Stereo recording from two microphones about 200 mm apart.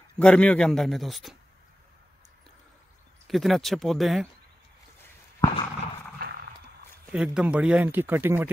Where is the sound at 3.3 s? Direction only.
Centre (ahead or behind).